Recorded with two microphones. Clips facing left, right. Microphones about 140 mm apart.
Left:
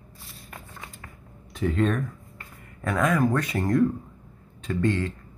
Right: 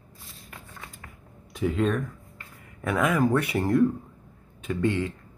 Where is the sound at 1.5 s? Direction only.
5° right (ahead or behind).